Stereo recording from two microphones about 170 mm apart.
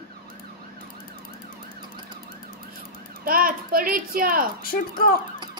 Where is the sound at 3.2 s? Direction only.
55° right (ahead or behind).